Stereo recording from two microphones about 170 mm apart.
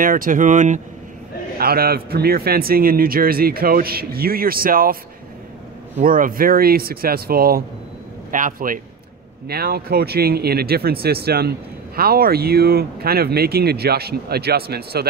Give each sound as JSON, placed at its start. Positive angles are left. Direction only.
{"t": 0.0, "sound": "speech", "side_deg": -55}
{"t": 1.6, "sound": "speech", "side_deg": -65}
{"t": 5.9, "sound": "speech", "side_deg": -55}
{"t": 8.3, "sound": "speech", "side_deg": -50}
{"t": 9.5, "sound": "speech", "side_deg": -65}